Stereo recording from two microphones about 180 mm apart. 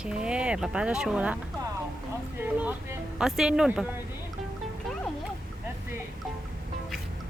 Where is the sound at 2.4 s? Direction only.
10° right (ahead or behind).